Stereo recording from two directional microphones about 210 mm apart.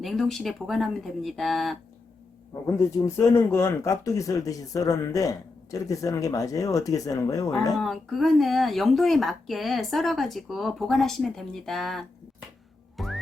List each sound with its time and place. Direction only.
0.0 s speech: centre (ahead or behind)
2.7 s speech: 15° left (ahead or behind)
7.8 s speech: centre (ahead or behind)
13.0 s music: centre (ahead or behind)